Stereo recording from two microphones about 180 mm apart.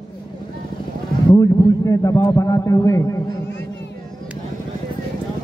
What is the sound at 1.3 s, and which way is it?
A man's voice, 20° left (ahead or behind).